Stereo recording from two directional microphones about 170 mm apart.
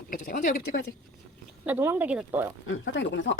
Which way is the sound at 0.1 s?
55° left (ahead or behind).